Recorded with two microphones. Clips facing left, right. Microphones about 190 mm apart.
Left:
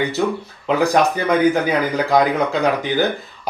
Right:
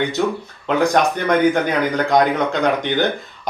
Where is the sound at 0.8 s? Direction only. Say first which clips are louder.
Even; 5° left (ahead or behind).